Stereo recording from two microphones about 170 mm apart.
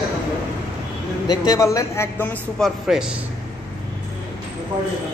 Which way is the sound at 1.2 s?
25° left (ahead or behind).